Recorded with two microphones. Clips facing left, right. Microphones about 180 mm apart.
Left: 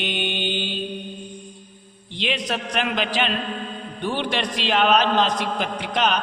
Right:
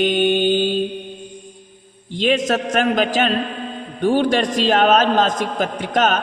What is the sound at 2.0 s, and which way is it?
A man's voice, 45° right (ahead or behind).